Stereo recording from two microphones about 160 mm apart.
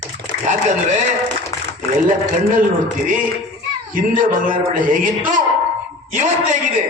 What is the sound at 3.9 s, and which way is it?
A man's voice, 60° right (ahead or behind).